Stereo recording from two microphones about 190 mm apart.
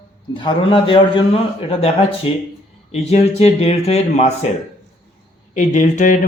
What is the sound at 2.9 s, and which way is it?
A man's voice, 35° left (ahead or behind).